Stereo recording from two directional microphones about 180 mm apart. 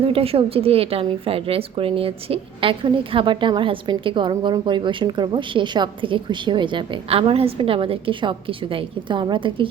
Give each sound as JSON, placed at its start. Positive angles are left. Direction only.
{"t": 0.1, "sound": "a woman's voice", "side_deg": -30}